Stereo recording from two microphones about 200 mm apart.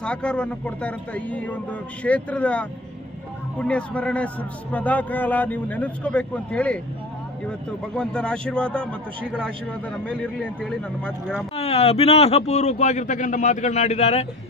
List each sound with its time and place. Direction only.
0.0 s a man's voice: 5° left (ahead or behind)
10.4 s speech: centre (ahead or behind)
11.5 s speech: 30° left (ahead or behind)